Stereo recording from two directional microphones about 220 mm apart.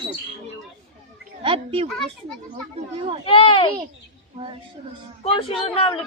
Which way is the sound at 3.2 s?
25° left (ahead or behind).